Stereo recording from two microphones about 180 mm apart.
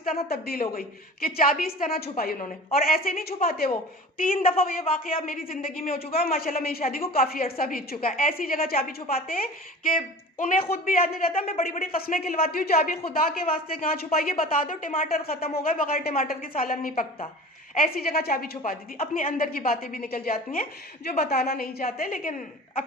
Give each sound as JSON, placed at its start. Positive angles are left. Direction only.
{"t": 0.3, "sound": "a woman's voice", "side_deg": 60}
{"t": 6.0, "sound": "speech", "side_deg": 35}
{"t": 6.2, "sound": "a woman's voice", "side_deg": 55}
{"t": 11.3, "sound": "speech", "side_deg": 35}
{"t": 11.9, "sound": "a woman's voice", "side_deg": 55}